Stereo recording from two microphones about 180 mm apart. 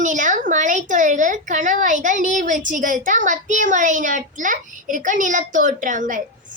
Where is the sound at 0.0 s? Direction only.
45° right (ahead or behind).